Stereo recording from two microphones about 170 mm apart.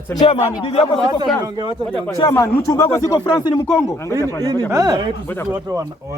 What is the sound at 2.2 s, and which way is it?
Speech, 20° left (ahead or behind).